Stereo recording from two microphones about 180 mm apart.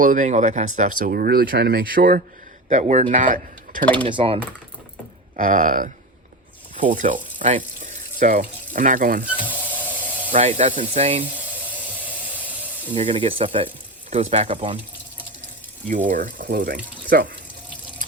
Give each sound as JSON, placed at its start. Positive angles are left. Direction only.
{"t": 0.0, "sound": "speech", "side_deg": -50}
{"t": 2.6, "sound": "speech", "side_deg": -40}
{"t": 4.0, "sound": "speech", "side_deg": -30}
{"t": 5.4, "sound": "speech", "side_deg": -50}
{"t": 9.3, "sound": "a sound", "side_deg": -10}
{"t": 10.3, "sound": "speech", "side_deg": -35}
{"t": 11.3, "sound": "a sound", "side_deg": -10}
{"t": 12.9, "sound": "speech", "side_deg": -30}
{"t": 16.0, "sound": "speech", "side_deg": -50}